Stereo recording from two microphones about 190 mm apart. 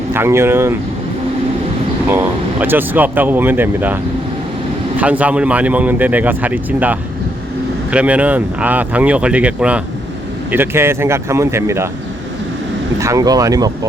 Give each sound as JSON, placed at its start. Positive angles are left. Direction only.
{"t": 0.1, "sound": "speech", "side_deg": -15}
{"t": 2.0, "sound": "speech", "side_deg": -10}
{"t": 4.9, "sound": "speech", "side_deg": -5}
{"t": 13.0, "sound": "speech", "side_deg": -15}